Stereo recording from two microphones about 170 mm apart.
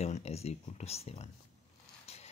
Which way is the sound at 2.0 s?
40° left (ahead or behind).